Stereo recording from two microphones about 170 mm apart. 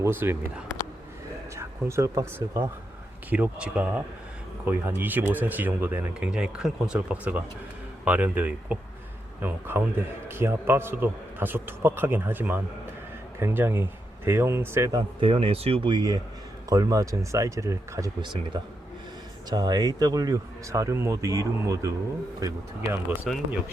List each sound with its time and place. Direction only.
0.0 s a man's voice: 15° right (ahead or behind)
1.5 s a man's voice: 15° right (ahead or behind)
23.3 s speech: centre (ahead or behind)